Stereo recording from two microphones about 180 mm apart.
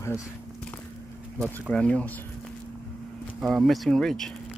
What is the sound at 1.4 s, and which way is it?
Speech, 5° left (ahead or behind).